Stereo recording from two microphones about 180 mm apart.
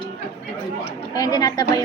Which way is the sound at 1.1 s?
20° left (ahead or behind).